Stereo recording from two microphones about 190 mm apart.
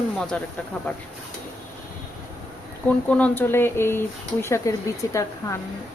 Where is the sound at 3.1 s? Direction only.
5° left (ahead or behind).